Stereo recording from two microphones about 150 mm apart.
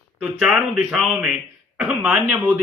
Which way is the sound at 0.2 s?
5° right (ahead or behind).